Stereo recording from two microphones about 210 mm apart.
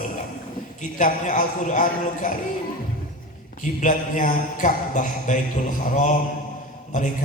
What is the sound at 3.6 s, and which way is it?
Mantra, 40° left (ahead or behind).